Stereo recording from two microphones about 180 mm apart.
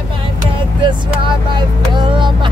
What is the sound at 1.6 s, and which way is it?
Vehicle, 25° right (ahead or behind).